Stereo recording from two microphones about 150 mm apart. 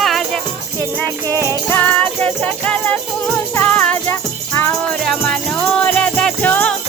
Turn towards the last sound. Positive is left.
turn(degrees=10)  # may be behind; listen again after turning